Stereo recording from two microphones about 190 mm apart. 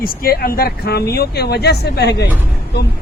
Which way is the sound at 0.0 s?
50° left (ahead or behind).